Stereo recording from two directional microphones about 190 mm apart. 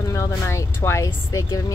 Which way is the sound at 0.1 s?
15° left (ahead or behind).